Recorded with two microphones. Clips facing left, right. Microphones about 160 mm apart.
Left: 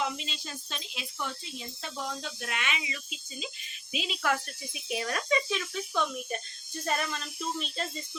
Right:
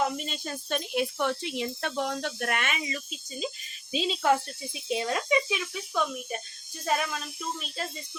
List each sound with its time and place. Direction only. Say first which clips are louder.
0.0 s speech: right 4 dB; 50° right (ahead or behind)
3.9 s speech: right 6 dB; 30° right (ahead or behind); by 7.9 s 5° right (ahead or behind)